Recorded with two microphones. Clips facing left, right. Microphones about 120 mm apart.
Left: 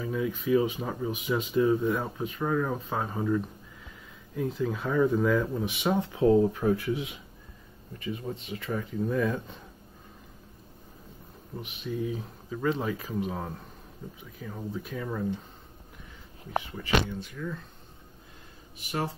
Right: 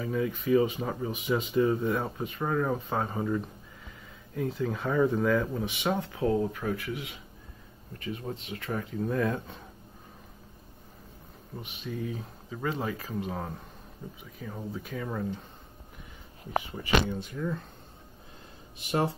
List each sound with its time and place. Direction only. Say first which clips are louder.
0.0 s speech: even; centre (ahead or behind)
5.9 s speech: left 9 dB; 25° left (ahead or behind)
8.0 s speech: left 1 dB; centre (ahead or behind)
11.5 s speech: left 3 dB; 10° left (ahead or behind)
12.4 s speech: left 3 dB; 5° right (ahead or behind)
12.9 s speech: left 2 dB; 5° left (ahead or behind)
17.4 s speech: right 3 dB; 25° right (ahead or behind)
18.8 s speech: right 4 dB; 25° right (ahead or behind)